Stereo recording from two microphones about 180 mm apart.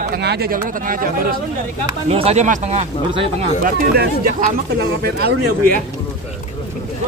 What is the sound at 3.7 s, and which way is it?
Speech, 50° right (ahead or behind).